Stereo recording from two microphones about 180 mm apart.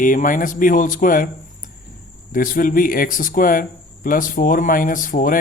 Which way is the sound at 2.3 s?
50° left (ahead or behind).